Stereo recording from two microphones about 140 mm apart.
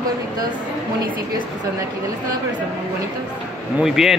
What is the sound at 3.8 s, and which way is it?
Speech, 5° right (ahead or behind).